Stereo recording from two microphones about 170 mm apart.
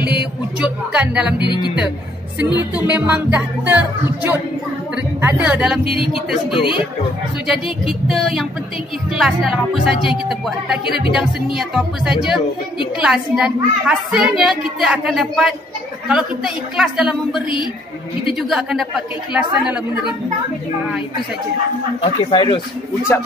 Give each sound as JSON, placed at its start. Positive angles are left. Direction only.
{"t": 0.6, "sound": "music", "side_deg": -5}
{"t": 1.4, "sound": "speech", "side_deg": 25}
{"t": 2.7, "sound": "music", "side_deg": -10}
{"t": 4.9, "sound": "speech", "side_deg": -10}
{"t": 5.9, "sound": "speech", "side_deg": 30}
{"t": 7.4, "sound": "a woman's voice", "side_deg": -5}
{"t": 18.5, "sound": "a woman's voice", "side_deg": -5}
{"t": 22.0, "sound": "speech", "side_deg": 30}